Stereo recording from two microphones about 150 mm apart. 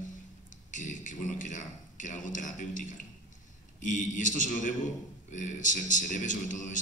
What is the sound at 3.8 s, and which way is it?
A man's voice, 60° left (ahead or behind).